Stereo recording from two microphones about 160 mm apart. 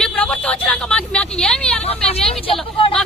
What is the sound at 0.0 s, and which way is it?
Vehicle, 5° left (ahead or behind).